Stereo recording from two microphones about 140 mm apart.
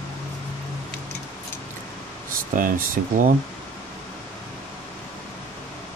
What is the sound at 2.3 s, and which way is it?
Speech, 85° right.